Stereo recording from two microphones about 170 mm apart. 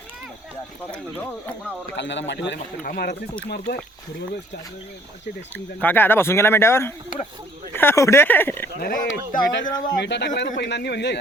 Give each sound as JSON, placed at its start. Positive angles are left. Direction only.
{"t": 2.0, "sound": "a man's voice", "side_deg": 90}
{"t": 3.7, "sound": "speech", "side_deg": 85}
{"t": 5.8, "sound": "speech", "side_deg": 10}
{"t": 8.8, "sound": "speech", "side_deg": 55}
{"t": 9.6, "sound": "speech", "side_deg": 25}
{"t": 10.0, "sound": "a man's voice", "side_deg": 85}